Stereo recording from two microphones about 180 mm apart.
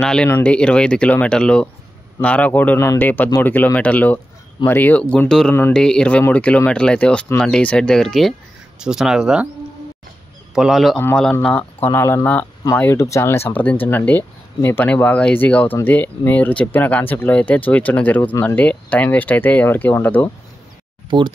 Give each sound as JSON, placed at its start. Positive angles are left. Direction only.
{"t": 0.0, "sound": "speech", "side_deg": 5}
{"t": 10.5, "sound": "speech", "side_deg": 0}
{"t": 21.1, "sound": "speech", "side_deg": -25}